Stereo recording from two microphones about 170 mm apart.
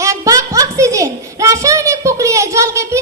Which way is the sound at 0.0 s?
20° right (ahead or behind).